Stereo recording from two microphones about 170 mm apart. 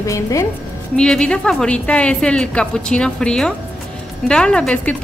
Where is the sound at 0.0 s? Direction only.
20° left (ahead or behind).